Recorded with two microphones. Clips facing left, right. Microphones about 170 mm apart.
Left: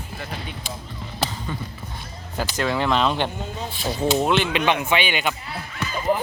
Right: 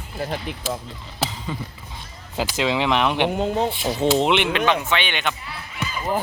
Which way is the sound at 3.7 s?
20° right (ahead or behind).